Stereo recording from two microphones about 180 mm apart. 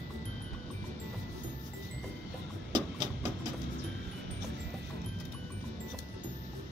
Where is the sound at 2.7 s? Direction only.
25° right (ahead or behind).